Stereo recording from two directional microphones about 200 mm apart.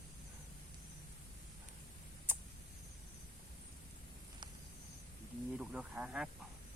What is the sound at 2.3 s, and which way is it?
Tick, 10° right (ahead or behind).